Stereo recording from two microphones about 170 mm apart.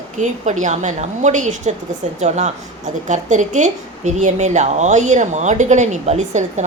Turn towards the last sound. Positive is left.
turn(degrees=-45)  # may be behind; listen again after turning